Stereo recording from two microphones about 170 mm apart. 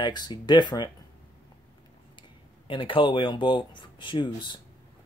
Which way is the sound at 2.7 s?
30° left (ahead or behind).